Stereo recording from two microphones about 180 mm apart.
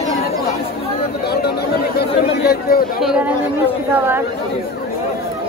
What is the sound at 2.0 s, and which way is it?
Chatter, 60° left (ahead or behind).